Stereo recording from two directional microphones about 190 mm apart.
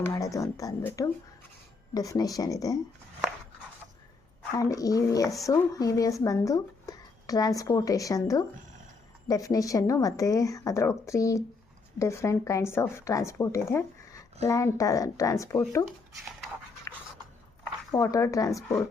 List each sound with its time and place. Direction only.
0.1 s speech: 15° left (ahead or behind)
4.5 s speech: 20° left (ahead or behind)
16.9 s a sound: 15° left (ahead or behind)
17.9 s speech: 15° left (ahead or behind)